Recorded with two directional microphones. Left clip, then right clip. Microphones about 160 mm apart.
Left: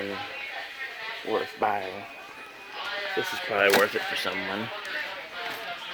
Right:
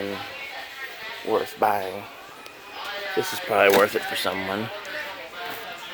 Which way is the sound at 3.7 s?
15° right (ahead or behind).